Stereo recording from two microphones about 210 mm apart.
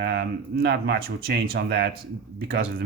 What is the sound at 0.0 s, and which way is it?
Speech, 50° right (ahead or behind).